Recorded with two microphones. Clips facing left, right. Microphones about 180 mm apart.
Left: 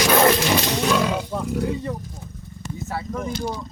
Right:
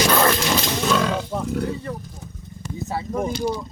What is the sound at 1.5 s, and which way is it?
Speech, 15° left (ahead or behind).